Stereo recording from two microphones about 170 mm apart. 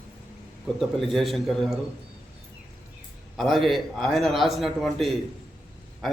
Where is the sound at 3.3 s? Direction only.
Centre (ahead or behind).